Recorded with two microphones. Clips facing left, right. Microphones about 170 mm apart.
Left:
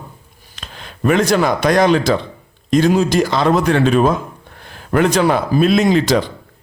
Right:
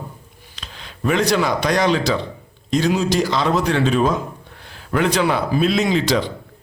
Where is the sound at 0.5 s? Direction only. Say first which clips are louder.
Left 4 dB; 50° left (ahead or behind).